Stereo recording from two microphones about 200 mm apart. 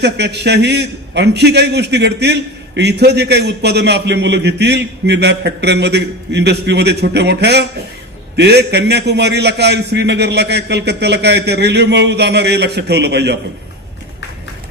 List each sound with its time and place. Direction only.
0.0 s a man's voice: 55° right (ahead or behind)